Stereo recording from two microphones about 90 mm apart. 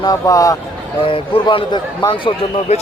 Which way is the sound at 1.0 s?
80° left.